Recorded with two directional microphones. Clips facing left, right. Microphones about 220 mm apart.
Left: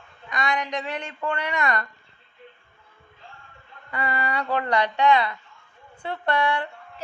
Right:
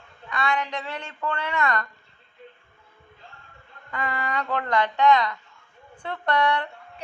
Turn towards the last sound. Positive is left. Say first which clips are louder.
# even
turn(degrees=5)  # may be behind; listen again after turning